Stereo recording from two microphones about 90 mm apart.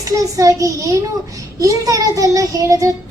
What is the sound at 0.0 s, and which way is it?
A child's voice, 40° right (ahead or behind).